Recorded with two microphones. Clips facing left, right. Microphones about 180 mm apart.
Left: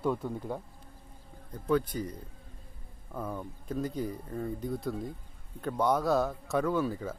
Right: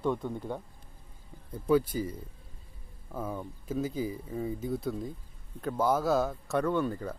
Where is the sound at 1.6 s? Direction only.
5° right (ahead or behind).